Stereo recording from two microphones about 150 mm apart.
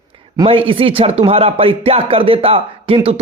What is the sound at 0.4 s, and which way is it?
Speech, 40° right (ahead or behind).